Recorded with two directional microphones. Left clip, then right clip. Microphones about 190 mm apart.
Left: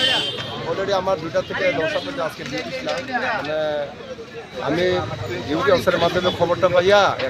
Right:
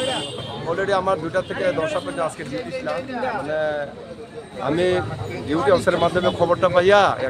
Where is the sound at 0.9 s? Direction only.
35° right (ahead or behind).